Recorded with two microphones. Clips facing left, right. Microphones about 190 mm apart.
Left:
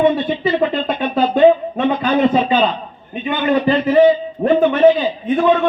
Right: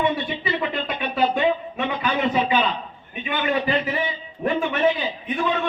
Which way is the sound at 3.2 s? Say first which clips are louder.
Left 7 dB; 50° left (ahead or behind).